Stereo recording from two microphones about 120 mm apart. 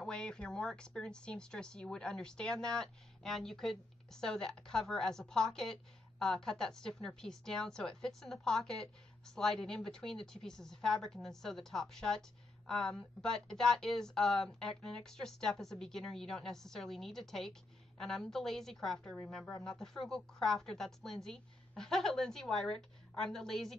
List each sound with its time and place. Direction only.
0.0 s speech: 5° left (ahead or behind)